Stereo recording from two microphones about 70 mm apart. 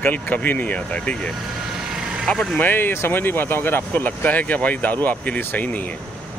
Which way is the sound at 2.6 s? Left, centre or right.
Left.